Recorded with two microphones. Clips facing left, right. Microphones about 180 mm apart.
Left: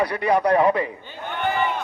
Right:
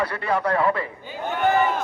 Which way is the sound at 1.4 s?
40° right (ahead or behind).